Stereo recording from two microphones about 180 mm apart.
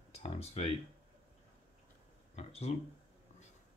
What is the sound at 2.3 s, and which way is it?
Speech, 35° left (ahead or behind).